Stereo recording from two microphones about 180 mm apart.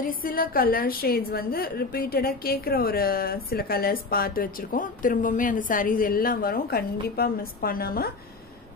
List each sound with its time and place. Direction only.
0.0 s a woman's voice: 50° left (ahead or behind)